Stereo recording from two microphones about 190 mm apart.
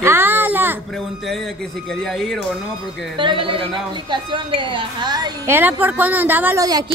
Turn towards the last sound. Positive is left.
turn(degrees=-20)  # may be behind; listen again after turning